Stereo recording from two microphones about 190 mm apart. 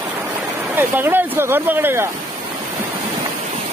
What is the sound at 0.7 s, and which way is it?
Speech, 10° right (ahead or behind).